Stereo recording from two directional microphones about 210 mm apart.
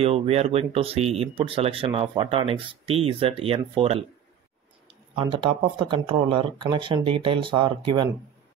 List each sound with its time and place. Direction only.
0.0 s speech: 30° right (ahead or behind)
5.1 s speech: 25° right (ahead or behind)